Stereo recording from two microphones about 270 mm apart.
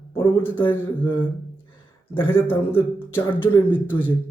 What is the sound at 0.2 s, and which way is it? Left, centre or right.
Speech, centre.